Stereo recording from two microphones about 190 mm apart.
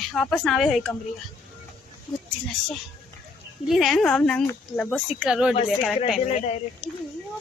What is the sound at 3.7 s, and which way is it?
A woman's voice, centre (ahead or behind).